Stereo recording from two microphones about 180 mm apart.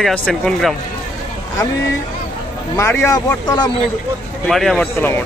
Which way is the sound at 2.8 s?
15° left (ahead or behind).